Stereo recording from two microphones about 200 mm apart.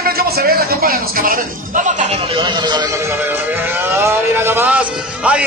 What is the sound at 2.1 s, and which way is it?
Speech, 25° right (ahead or behind).